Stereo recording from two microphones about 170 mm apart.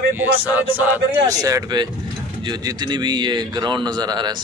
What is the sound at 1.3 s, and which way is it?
A man's voice, 20° right (ahead or behind).